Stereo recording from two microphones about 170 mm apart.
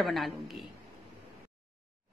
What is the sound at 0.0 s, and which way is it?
Speech, centre (ahead or behind).